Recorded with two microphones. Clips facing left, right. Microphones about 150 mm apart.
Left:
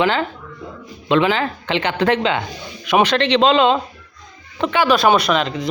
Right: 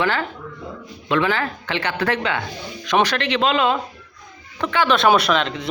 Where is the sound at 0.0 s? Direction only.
20° left (ahead or behind).